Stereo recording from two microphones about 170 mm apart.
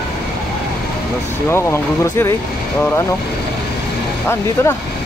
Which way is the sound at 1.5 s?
15° left (ahead or behind).